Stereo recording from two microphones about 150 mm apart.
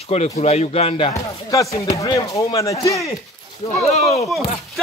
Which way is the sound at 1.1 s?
20° left (ahead or behind).